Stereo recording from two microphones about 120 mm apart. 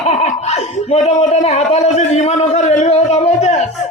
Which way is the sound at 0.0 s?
70° left (ahead or behind).